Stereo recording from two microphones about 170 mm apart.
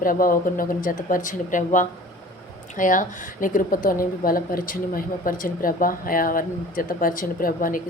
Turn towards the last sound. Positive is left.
turn(degrees=55)  # may be behind; listen again after turning